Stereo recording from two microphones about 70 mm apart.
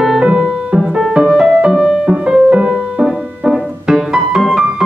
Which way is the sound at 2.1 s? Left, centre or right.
Centre.